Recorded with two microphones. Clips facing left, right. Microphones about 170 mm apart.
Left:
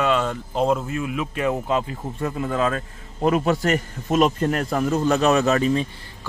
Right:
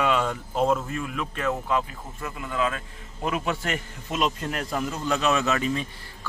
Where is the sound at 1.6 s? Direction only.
30° left (ahead or behind).